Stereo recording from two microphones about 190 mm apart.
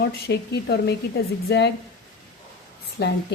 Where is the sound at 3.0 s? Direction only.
60° left (ahead or behind).